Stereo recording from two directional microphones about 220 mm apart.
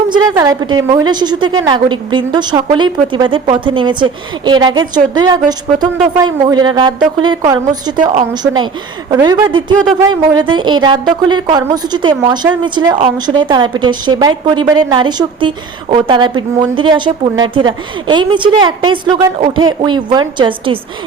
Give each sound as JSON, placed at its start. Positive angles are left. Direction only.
{"t": 0.1, "sound": "speech", "side_deg": -15}